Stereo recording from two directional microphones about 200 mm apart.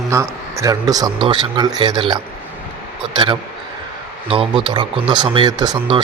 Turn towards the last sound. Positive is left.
turn(degrees=-25)  # may be behind; listen again after turning